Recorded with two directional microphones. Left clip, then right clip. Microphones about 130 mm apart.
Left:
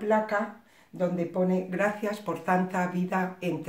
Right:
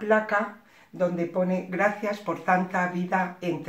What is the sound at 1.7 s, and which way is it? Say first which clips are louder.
Speech: right 3 dB; 25° left (ahead or behind).